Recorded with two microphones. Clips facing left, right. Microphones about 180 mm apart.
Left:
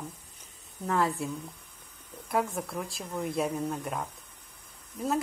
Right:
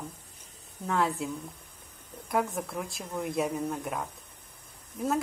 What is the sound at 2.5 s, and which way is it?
Speech, centre (ahead or behind).